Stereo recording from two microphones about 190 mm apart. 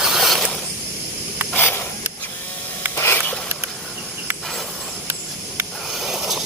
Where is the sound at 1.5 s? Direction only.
10° left (ahead or behind).